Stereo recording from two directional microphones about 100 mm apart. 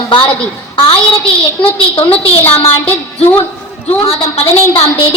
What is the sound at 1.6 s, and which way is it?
A woman's voice, 65° left (ahead or behind).